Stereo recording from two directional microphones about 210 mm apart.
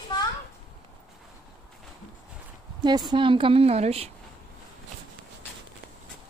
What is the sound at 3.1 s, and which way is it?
A woman's voice, 25° right (ahead or behind).